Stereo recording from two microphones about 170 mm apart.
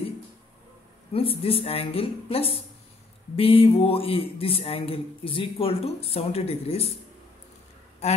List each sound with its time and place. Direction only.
1.1 s speech: 35° left (ahead or behind)